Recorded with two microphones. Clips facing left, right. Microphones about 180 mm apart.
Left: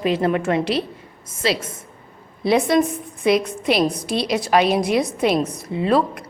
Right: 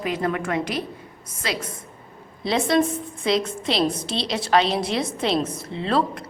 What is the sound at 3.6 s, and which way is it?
Speech, 25° right (ahead or behind).